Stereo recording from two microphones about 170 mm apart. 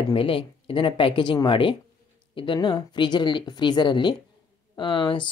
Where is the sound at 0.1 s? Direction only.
30° left (ahead or behind).